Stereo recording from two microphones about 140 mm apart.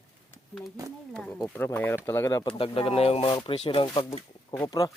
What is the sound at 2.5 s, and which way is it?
Speech, 40° left (ahead or behind).